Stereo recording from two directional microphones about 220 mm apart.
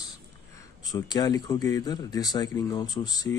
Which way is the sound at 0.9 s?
15° left (ahead or behind).